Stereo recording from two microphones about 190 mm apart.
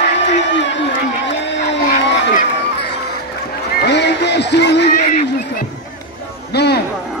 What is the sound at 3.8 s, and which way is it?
Music, 60° left (ahead or behind).